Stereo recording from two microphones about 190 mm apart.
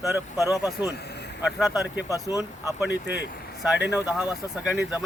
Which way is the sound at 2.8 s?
65° left (ahead or behind).